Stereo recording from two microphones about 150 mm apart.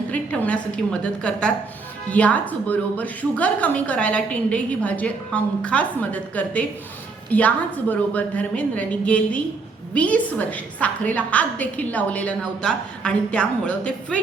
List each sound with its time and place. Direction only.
0.1 s a woman's voice: 10° left (ahead or behind)